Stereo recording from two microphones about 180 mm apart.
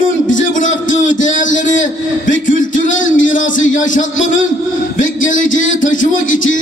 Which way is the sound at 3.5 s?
45° left (ahead or behind).